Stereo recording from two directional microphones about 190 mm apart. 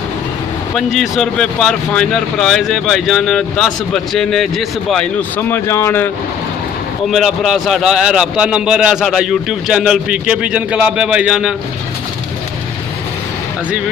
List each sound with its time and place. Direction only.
0.7 s a man's voice: centre (ahead or behind)
5.5 s speech: 15° left (ahead or behind)
7.1 s a man's voice: centre (ahead or behind)